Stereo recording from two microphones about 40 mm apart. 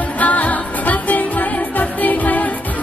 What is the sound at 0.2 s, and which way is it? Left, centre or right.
Music, left.